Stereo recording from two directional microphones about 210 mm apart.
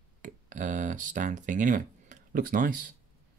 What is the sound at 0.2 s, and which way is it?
Speech, 35° right (ahead or behind).